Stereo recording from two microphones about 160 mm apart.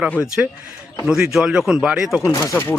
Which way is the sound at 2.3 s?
15° left (ahead or behind).